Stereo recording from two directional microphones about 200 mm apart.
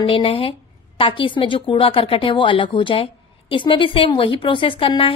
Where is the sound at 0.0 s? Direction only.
30° left (ahead or behind).